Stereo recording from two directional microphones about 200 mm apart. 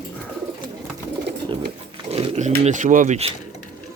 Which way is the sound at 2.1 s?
30° right (ahead or behind).